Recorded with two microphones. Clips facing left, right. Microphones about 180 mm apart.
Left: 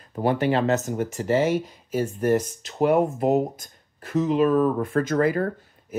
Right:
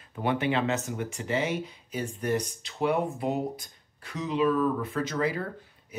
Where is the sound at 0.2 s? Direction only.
40° left (ahead or behind).